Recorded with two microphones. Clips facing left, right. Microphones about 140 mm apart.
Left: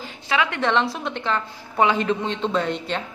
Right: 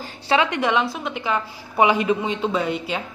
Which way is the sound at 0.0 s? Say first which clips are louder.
Right 3 dB; 30° right (ahead or behind).